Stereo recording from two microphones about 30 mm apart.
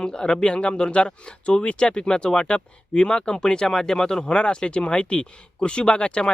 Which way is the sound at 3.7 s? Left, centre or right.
Centre.